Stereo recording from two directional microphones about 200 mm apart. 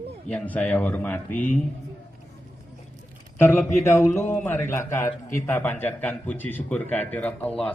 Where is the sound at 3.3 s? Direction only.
10° left (ahead or behind).